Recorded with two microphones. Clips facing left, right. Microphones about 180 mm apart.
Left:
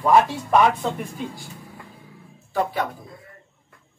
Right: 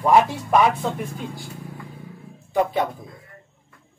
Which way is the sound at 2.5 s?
20° right (ahead or behind).